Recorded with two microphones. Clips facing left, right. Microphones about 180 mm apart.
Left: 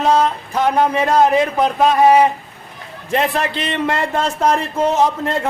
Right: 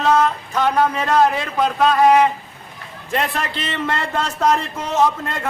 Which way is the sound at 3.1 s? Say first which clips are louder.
Left 4 dB; 25° left (ahead or behind).